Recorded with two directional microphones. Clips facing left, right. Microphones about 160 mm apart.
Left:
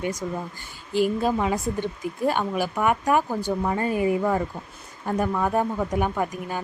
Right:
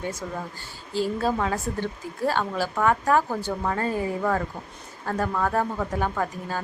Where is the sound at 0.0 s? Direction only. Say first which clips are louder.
Left 3 dB; 15° left (ahead or behind).